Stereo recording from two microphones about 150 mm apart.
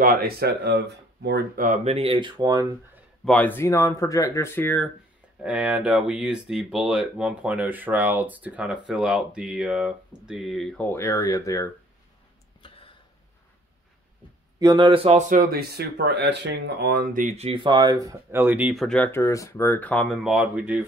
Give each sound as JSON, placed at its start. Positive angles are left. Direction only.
{"t": 0.0, "sound": "speech", "side_deg": -75}
{"t": 1.9, "sound": "speech", "side_deg": -40}
{"t": 3.3, "sound": "speech", "side_deg": 10}
{"t": 5.4, "sound": "speech", "side_deg": -10}
{"t": 12.6, "sound": "a sound", "side_deg": 35}
{"t": 14.6, "sound": "speech", "side_deg": -30}
{"t": 15.1, "sound": "speech", "side_deg": -60}
{"t": 17.2, "sound": "speech", "side_deg": -50}
{"t": 18.8, "sound": "speech", "side_deg": 5}